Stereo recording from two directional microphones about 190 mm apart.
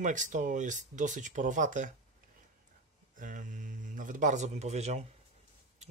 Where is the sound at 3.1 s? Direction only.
45° right (ahead or behind).